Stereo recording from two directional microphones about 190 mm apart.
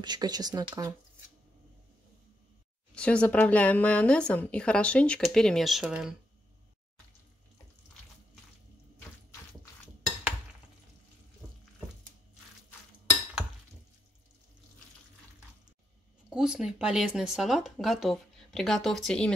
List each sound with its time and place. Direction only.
0.0 s speech: 20° right (ahead or behind)
2.9 s speech: 5° left (ahead or behind)
16.3 s speech: 5° right (ahead or behind)